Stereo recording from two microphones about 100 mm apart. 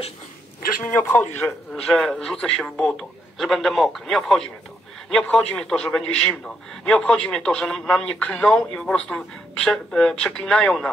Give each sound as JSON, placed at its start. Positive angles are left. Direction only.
{"t": 1.0, "sound": "a man's voice", "side_deg": 20}
{"t": 1.7, "sound": "a man's voice", "side_deg": 5}